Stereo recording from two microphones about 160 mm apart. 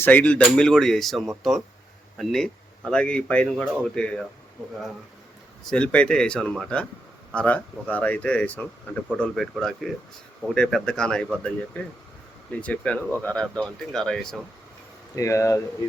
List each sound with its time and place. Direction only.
0.0 s speech: 10° left (ahead or behind)
5.6 s speech: 5° left (ahead or behind)
15.1 s speech: 20° left (ahead or behind)